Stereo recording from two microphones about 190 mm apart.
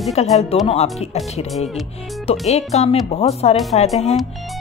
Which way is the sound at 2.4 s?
35° left (ahead or behind).